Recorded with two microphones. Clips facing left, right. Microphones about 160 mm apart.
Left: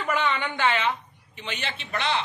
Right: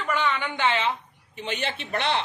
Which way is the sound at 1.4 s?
50° right (ahead or behind).